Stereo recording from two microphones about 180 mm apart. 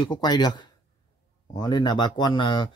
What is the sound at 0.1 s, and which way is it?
Speech, 25° left (ahead or behind).